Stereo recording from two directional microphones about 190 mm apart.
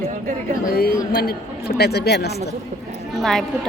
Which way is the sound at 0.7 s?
50° left (ahead or behind).